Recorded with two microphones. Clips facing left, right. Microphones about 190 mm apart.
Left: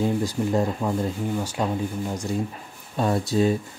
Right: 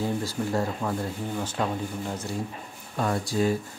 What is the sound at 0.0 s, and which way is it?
Speech, 15° left (ahead or behind).